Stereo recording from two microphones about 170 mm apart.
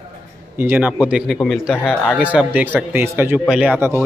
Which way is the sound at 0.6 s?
10° right (ahead or behind).